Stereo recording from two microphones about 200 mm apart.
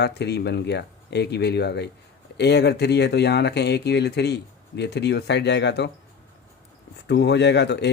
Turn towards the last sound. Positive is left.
turn(degrees=60)  # may be behind; listen again after turning